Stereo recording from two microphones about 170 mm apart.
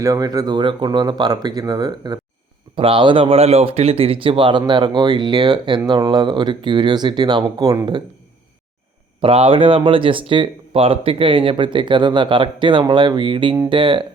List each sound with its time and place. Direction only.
0.0 s speech: 20° right (ahead or behind)
9.2 s speech: 35° right (ahead or behind)